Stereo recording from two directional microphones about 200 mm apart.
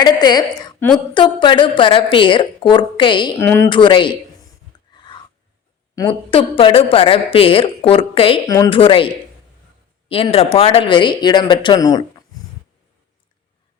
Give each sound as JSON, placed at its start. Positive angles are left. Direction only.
{"t": 0.0, "sound": "a woman's voice", "side_deg": 20}
{"t": 3.3, "sound": "speech", "side_deg": 10}
{"t": 3.7, "sound": "a woman's voice", "side_deg": 25}
{"t": 4.7, "sound": "a sound", "side_deg": 20}
{"t": 6.0, "sound": "a woman's voice", "side_deg": 25}
{"t": 8.4, "sound": "a woman's voice", "side_deg": 15}